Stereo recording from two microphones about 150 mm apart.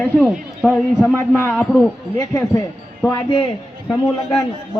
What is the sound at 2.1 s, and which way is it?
Speech, 20° left (ahead or behind).